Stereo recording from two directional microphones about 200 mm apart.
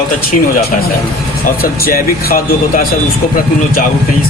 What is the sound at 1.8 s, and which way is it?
Speech, 45° left (ahead or behind).